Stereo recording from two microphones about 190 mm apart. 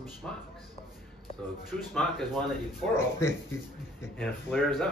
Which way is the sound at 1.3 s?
30° left (ahead or behind).